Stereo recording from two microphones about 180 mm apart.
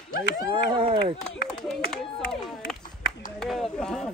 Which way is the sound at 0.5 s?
30° right (ahead or behind).